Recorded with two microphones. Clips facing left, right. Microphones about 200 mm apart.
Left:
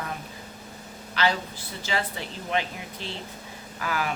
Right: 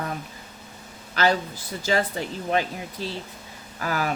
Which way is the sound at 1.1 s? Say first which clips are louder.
Right 4 dB; 45° right (ahead or behind).